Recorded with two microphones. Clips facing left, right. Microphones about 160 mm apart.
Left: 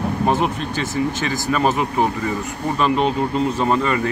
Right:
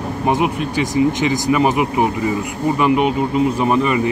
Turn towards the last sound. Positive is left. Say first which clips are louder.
# right 3 dB
turn(degrees=-15)  # may be behind; listen again after turning